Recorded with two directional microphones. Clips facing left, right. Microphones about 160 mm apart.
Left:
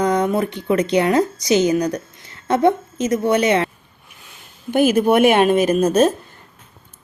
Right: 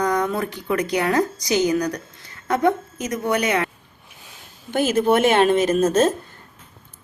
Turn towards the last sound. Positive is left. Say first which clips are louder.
# left 2 dB
turn(degrees=15)  # may be behind; listen again after turning